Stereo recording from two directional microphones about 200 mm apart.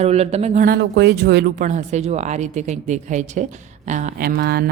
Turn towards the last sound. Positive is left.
turn(degrees=-50)  # may be behind; listen again after turning